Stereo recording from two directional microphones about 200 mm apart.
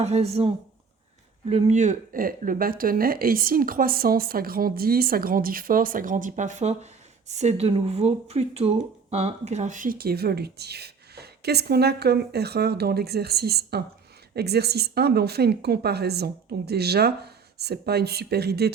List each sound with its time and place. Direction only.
0.0 s speech: 35° right (ahead or behind); by 18.7 s 55° right (ahead or behind)